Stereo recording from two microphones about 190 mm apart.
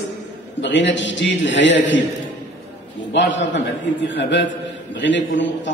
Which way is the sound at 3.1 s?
70° left (ahead or behind).